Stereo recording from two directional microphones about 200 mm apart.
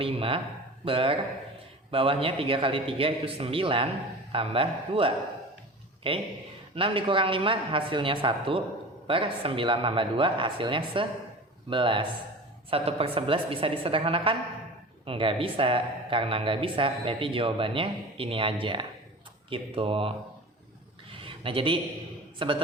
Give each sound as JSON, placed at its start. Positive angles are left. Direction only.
{"t": 0.0, "sound": "speech", "side_deg": -25}
{"t": 21.1, "sound": "a sound", "side_deg": -25}
{"t": 22.4, "sound": "speech", "side_deg": -25}